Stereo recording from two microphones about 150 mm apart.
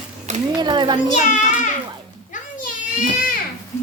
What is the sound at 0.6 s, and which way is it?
Speech, 30° right (ahead or behind).